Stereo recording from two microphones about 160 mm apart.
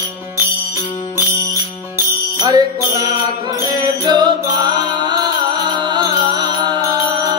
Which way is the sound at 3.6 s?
20° right (ahead or behind).